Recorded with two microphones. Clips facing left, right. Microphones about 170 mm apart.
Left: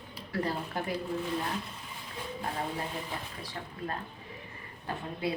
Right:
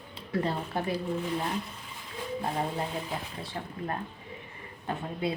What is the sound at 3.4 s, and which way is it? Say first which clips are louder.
Speech: right 3 dB; 25° right (ahead or behind).